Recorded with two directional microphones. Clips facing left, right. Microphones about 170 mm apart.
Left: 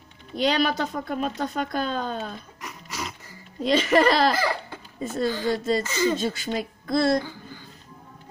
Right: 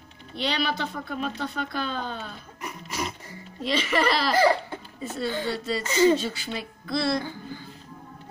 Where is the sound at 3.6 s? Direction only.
45° left (ahead or behind).